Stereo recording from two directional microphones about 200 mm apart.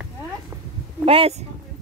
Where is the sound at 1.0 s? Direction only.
30° right (ahead or behind).